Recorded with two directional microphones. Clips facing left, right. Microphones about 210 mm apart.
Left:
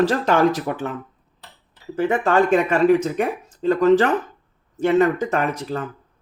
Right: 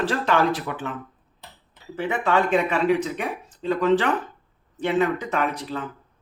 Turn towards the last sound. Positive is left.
turn(degrees=45)  # may be behind; listen again after turning